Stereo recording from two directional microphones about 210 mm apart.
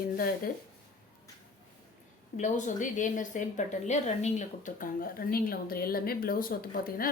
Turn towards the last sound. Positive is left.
turn(degrees=45)  # may be behind; listen again after turning